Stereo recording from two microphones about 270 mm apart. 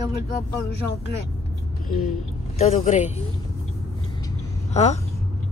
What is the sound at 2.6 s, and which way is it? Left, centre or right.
Speech, left.